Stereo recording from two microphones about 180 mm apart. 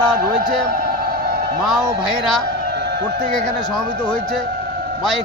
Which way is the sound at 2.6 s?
65° right (ahead or behind).